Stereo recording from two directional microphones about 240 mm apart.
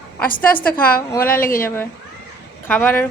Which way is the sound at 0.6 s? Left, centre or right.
Centre.